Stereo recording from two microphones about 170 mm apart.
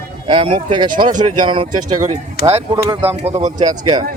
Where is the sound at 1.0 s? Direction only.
50° right (ahead or behind).